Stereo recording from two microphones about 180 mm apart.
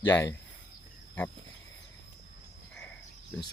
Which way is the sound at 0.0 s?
20° left (ahead or behind).